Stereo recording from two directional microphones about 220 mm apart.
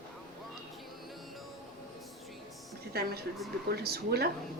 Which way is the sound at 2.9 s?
45° right (ahead or behind).